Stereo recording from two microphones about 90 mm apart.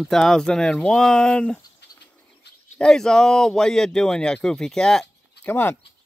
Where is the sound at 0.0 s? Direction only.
5° left (ahead or behind).